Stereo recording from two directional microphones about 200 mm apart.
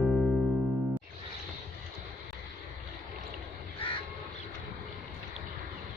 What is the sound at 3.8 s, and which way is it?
Crow, 25° left (ahead or behind).